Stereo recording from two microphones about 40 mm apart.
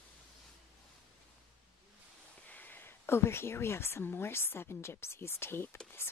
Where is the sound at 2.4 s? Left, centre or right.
Left.